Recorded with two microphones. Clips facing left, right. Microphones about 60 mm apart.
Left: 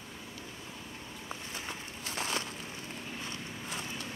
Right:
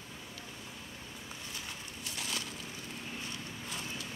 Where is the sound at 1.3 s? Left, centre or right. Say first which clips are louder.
Left 5 dB; left.